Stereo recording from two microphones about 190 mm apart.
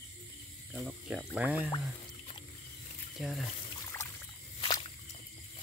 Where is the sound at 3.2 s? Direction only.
Centre (ahead or behind).